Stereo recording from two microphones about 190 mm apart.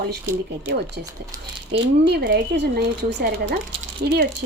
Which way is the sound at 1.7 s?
60° right (ahead or behind).